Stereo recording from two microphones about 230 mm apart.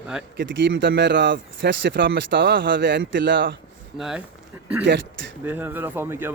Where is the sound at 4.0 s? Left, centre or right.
Centre.